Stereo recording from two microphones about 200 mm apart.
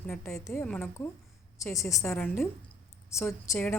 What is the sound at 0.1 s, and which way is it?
A woman's voice, 10° left (ahead or behind).